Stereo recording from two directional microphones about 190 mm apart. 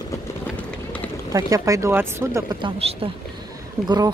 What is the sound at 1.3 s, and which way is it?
Speech, 20° right (ahead or behind).